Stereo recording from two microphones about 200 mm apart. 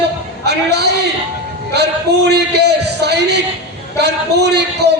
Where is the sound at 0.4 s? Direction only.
55° right (ahead or behind).